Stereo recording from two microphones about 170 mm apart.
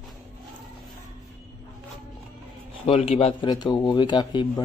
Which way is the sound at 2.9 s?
35° left (ahead or behind).